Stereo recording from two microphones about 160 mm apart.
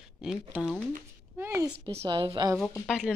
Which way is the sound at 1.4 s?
15° right (ahead or behind).